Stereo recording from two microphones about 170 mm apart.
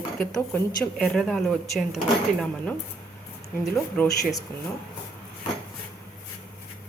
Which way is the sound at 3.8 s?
10° left (ahead or behind).